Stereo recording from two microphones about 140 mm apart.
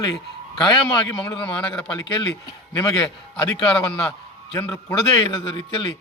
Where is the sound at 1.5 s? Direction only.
5° left (ahead or behind).